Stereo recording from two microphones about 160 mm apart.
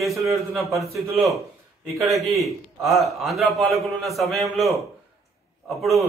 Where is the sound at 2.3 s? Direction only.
Centre (ahead or behind).